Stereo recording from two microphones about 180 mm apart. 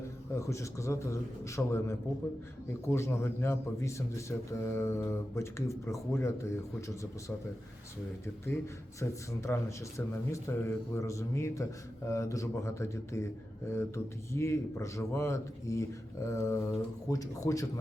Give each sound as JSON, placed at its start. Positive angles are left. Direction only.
{"t": 0.3, "sound": "a man's voice", "side_deg": 15}
{"t": 9.0, "sound": "a man's voice", "side_deg": 15}